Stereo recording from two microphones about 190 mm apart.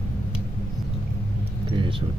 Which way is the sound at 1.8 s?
25° right (ahead or behind).